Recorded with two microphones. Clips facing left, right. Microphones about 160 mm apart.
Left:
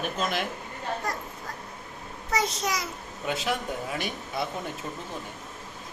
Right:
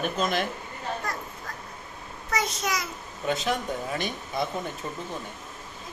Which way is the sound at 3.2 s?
5° left (ahead or behind).